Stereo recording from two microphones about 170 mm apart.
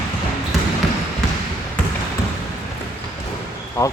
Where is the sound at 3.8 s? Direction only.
20° left (ahead or behind).